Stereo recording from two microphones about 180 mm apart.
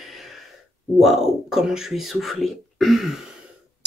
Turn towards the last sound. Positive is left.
turn(degrees=0)  # may be behind; listen again after turning